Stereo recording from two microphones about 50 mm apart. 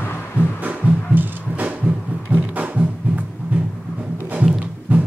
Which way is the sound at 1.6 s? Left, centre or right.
Right.